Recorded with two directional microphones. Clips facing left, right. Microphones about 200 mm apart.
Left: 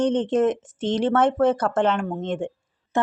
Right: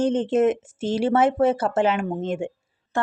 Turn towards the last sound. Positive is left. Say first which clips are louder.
# left 2 dB
turn(degrees=20)  # may be behind; listen again after turning